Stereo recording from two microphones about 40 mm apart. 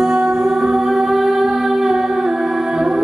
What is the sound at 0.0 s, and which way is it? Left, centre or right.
Music, centre.